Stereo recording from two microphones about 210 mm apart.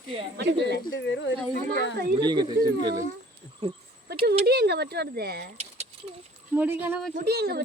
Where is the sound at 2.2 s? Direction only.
20° right (ahead or behind).